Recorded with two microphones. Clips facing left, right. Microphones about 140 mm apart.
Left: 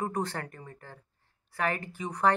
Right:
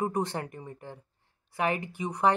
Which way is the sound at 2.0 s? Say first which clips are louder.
Even; 20° right (ahead or behind).